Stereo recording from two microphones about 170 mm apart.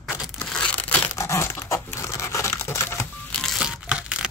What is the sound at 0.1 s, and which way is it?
Crumpling, 10° left (ahead or behind).